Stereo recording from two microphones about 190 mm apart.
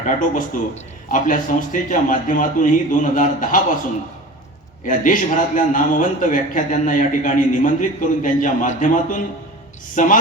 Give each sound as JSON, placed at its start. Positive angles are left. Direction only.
{"t": 0.0, "sound": "a man's voice", "side_deg": 45}
{"t": 4.9, "sound": "a man's voice", "side_deg": 45}